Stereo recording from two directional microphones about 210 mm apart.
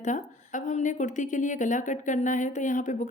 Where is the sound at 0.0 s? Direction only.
35° left (ahead or behind).